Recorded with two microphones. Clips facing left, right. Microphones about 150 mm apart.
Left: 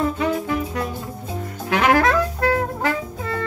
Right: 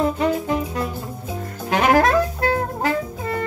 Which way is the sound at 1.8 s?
35° right (ahead or behind).